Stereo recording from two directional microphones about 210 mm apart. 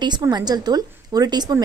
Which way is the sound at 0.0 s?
20° right (ahead or behind).